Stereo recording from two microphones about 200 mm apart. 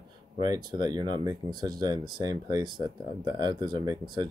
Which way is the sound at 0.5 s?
20° right (ahead or behind).